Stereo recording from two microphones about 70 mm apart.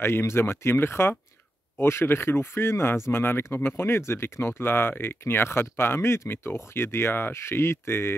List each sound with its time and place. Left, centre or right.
0.0 s speech: left